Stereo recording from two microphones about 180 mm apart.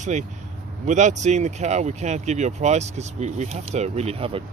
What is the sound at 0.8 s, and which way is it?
Speech, 40° right (ahead or behind).